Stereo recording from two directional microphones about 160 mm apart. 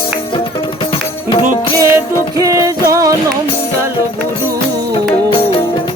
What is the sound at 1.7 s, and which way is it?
Music, 20° right (ahead or behind).